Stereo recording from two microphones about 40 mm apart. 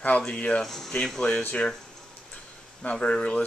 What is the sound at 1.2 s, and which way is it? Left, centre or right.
Speech, left.